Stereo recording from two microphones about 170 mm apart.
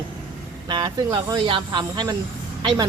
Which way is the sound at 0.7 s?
25° right (ahead or behind).